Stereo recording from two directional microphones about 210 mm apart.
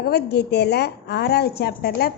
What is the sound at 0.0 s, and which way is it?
Mantra, 50° left (ahead or behind).